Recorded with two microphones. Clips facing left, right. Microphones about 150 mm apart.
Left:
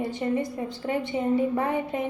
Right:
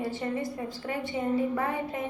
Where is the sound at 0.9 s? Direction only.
20° left (ahead or behind).